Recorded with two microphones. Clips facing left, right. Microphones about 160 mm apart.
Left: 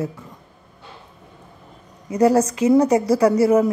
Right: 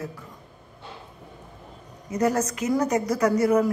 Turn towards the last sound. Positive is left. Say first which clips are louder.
# left 5 dB
turn(degrees=25)  # may be behind; listen again after turning